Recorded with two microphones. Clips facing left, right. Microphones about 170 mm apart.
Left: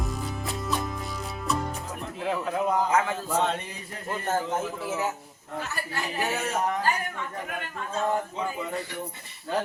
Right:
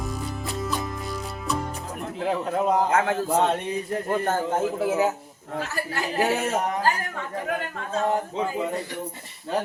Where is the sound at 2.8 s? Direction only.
60° right (ahead or behind).